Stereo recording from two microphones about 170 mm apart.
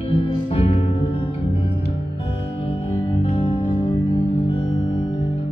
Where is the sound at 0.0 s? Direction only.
35° left (ahead or behind).